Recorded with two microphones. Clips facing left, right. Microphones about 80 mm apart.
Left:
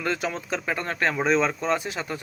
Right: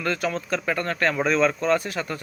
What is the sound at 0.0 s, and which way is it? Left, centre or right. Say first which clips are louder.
Speech: right 2 dB; centre.